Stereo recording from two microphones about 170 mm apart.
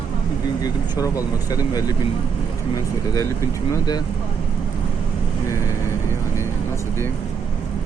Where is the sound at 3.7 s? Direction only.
25° left (ahead or behind).